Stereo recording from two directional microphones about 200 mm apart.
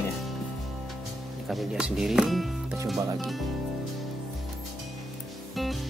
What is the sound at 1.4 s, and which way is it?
Speech, 5° right (ahead or behind).